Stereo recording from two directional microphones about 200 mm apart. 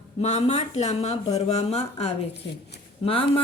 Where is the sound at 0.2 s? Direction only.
35° left (ahead or behind).